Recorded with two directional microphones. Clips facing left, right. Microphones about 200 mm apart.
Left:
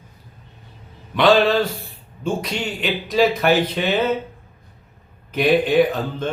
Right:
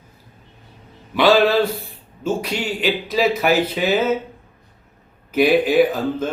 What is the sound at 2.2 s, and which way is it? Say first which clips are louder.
Speech: right 2 dB; 5° right (ahead or behind).